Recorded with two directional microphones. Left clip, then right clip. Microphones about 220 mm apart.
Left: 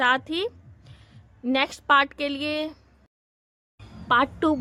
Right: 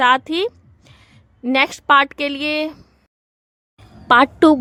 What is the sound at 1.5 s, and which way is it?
A woman's voice, 25° right (ahead or behind).